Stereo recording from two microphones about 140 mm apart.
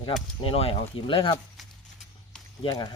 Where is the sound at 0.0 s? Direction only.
45° left (ahead or behind).